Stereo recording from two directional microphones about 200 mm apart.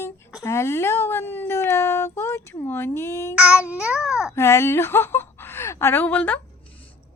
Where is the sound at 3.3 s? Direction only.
5° right (ahead or behind).